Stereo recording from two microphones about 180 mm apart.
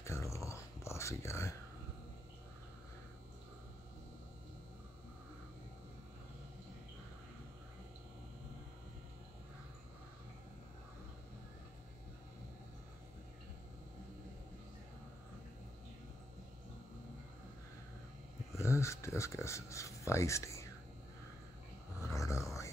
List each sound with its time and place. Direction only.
0.0 s whispering: 15° left (ahead or behind)
18.6 s speech: 15° left (ahead or behind)
22.1 s a sound: 15° left (ahead or behind)